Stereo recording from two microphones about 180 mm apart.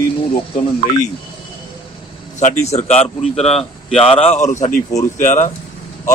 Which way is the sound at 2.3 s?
40° left (ahead or behind).